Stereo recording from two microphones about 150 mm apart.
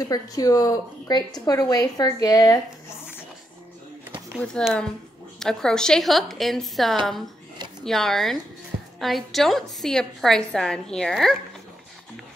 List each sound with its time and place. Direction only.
0.0 s a woman's voice: 25° left (ahead or behind)
4.6 s a woman's voice: 5° left (ahead or behind)